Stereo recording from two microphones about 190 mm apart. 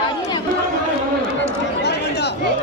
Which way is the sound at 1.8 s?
60° left (ahead or behind).